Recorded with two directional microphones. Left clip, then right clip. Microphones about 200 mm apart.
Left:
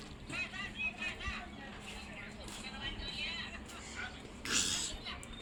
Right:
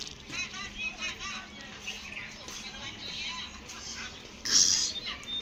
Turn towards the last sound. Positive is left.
turn(degrees=40)  # may be behind; listen again after turning